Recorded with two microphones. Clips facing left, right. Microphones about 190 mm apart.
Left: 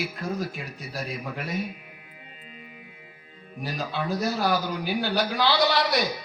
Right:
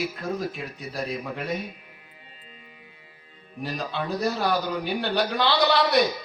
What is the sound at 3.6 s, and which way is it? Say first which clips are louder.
A man's voice: even; centre (ahead or behind).